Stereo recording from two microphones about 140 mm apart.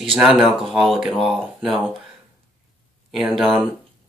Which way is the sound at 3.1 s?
Centre (ahead or behind).